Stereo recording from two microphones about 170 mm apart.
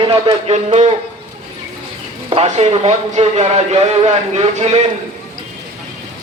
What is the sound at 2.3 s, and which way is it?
A man's voice, 40° right (ahead or behind).